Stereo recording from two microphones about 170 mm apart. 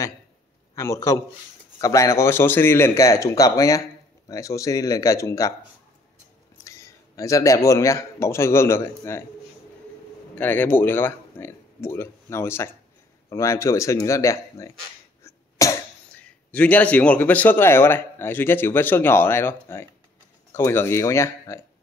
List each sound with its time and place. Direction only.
0.7 s a man's voice: 20° left (ahead or behind)
6.6 s speech: 20° left (ahead or behind)
10.3 s a man's voice: 10° left (ahead or behind)
15.2 s cough: 20° left (ahead or behind)
16.2 s a man's voice: 10° left (ahead or behind)